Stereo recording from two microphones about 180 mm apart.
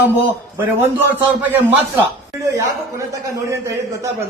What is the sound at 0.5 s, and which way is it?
Speech, 10° right (ahead or behind).